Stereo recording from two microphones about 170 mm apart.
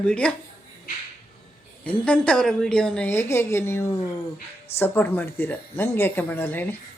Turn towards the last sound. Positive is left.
turn(degrees=10)  # may be behind; listen again after turning